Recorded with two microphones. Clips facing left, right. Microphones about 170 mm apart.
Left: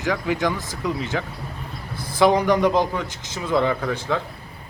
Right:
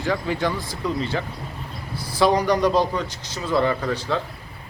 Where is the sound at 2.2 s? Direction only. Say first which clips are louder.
Left 1 dB; 20° left (ahead or behind).